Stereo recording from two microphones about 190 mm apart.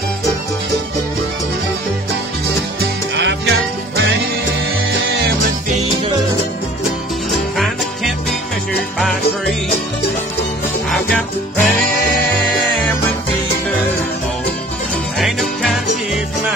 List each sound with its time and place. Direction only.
3.2 s music: 65° right (ahead or behind)
7.2 s music: centre (ahead or behind)
10.9 s music: 5° left (ahead or behind)
15.1 s music: centre (ahead or behind)